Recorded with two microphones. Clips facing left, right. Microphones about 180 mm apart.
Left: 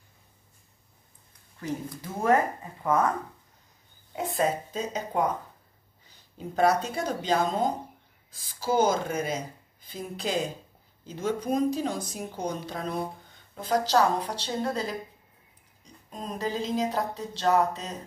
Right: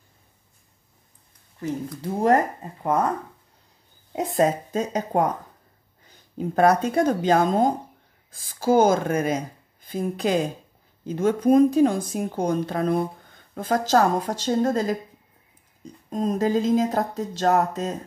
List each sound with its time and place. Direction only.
2.0 s speech: 35° right (ahead or behind)
4.2 s speech: 40° right (ahead or behind)
16.1 s speech: 45° right (ahead or behind)